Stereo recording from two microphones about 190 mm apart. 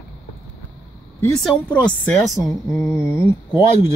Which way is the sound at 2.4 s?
15° left (ahead or behind).